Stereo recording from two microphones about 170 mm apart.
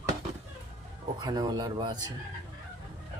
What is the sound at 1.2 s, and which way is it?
Speech, 25° right (ahead or behind).